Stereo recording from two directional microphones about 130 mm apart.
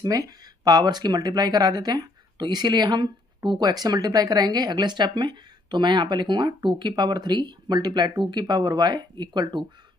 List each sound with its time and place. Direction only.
0.0 s speech: 25° right (ahead or behind)